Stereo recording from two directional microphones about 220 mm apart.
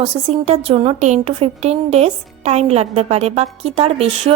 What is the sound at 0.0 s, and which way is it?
A woman's voice, 25° right (ahead or behind).